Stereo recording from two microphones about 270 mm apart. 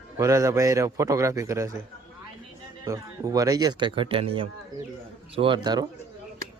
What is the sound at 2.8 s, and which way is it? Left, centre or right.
Speech, centre.